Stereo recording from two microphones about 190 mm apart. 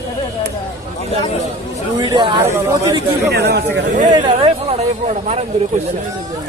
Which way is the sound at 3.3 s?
60° right (ahead or behind).